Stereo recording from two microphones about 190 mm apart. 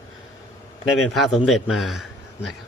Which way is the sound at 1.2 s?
Centre (ahead or behind).